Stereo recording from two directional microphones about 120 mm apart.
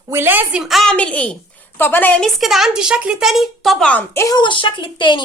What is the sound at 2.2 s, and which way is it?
Speech, centre (ahead or behind).